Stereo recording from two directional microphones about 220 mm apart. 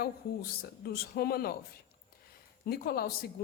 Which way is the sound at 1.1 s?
45° left (ahead or behind).